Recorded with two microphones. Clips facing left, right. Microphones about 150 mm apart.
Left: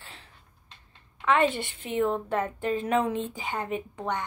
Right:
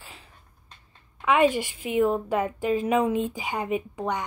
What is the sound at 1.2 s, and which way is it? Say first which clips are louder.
A woman's voice: right 3 dB; 10° right (ahead or behind).